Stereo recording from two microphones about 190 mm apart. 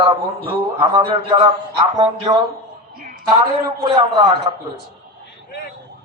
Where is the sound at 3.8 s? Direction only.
25° right (ahead or behind).